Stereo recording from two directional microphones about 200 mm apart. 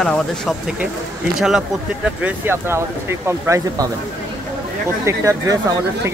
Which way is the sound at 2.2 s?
10° right (ahead or behind).